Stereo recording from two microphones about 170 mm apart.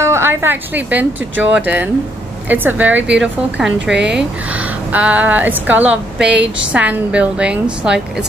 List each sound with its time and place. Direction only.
0.0 s a woman's voice: 15° right (ahead or behind)
3.9 s speech: 90° right
4.2 s a woman's voice: 10° right (ahead or behind)